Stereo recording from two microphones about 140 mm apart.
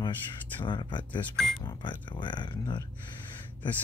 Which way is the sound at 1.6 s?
30° left (ahead or behind).